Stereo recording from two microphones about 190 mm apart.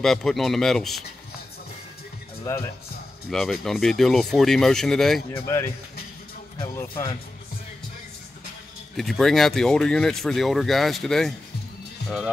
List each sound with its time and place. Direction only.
0.0 s speech: centre (ahead or behind)
2.4 s speech: 15° left (ahead or behind)
3.3 s speech: centre (ahead or behind)
6.8 s speech: 15° left (ahead or behind)
8.9 s speech: centre (ahead or behind)